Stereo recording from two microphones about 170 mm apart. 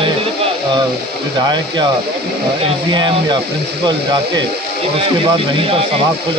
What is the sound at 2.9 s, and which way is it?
Speech, 25° right (ahead or behind).